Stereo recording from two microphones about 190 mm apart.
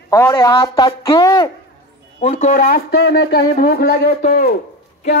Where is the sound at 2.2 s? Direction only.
45° left (ahead or behind).